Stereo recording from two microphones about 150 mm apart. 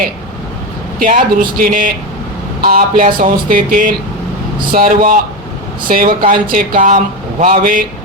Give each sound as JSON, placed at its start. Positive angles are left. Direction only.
{"t": 0.9, "sound": "speech", "side_deg": -65}
{"t": 2.6, "sound": "speech", "side_deg": -75}